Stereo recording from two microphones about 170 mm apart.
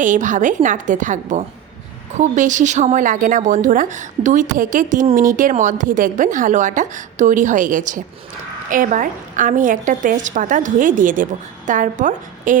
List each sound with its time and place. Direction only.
0.0 s a woman's voice: 50° right (ahead or behind)